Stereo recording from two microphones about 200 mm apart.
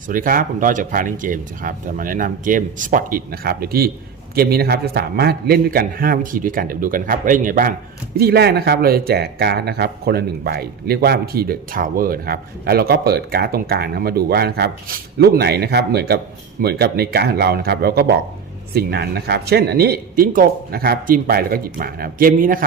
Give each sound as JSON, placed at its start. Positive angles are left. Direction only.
{"t": 0.1, "sound": "speech", "side_deg": -45}